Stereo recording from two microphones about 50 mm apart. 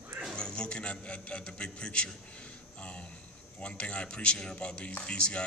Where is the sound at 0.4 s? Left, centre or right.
Centre.